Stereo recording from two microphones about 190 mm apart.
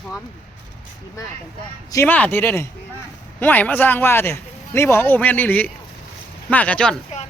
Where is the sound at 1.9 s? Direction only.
10° left (ahead or behind).